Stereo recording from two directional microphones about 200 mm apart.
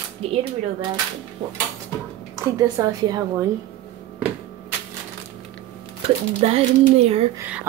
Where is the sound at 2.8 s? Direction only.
20° right (ahead or behind).